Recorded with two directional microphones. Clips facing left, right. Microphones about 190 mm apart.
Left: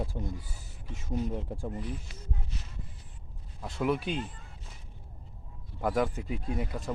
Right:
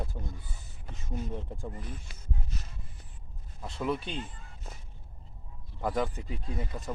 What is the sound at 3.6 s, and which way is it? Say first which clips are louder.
Speech: left 3 dB; 5° left (ahead or behind).